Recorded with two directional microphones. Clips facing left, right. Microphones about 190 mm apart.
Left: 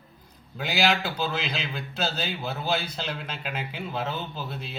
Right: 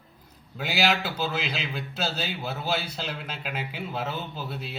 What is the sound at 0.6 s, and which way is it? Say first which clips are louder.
A man's voice: left 1 dB; 5° right (ahead or behind).